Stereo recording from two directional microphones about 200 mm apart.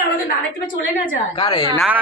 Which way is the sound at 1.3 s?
30° left (ahead or behind).